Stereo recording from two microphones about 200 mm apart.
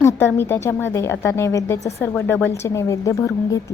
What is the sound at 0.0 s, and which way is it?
A woman's voice, 10° left (ahead or behind).